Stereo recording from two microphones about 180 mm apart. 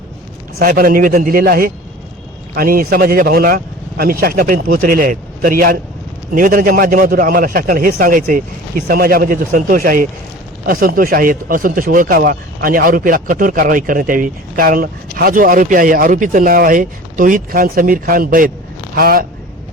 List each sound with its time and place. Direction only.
0.6 s speech: 55° right (ahead or behind)